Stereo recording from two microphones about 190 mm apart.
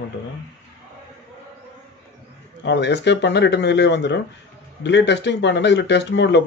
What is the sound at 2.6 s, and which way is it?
Speech, 65° left (ahead or behind).